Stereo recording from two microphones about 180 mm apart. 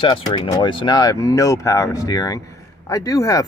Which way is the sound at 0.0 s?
25° left (ahead or behind).